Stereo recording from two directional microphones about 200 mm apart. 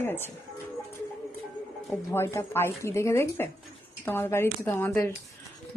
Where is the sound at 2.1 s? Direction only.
10° left (ahead or behind).